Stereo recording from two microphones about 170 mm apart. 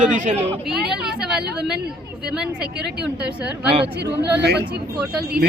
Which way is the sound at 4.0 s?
75° right (ahead or behind).